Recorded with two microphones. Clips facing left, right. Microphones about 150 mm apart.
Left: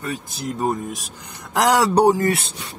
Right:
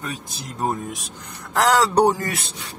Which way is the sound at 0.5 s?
Centre (ahead or behind).